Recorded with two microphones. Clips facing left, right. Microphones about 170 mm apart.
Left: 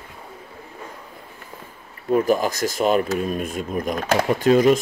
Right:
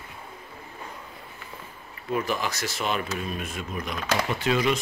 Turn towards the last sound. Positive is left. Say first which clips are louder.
# left 9 dB
turn(degrees=45)  # may be behind; listen again after turning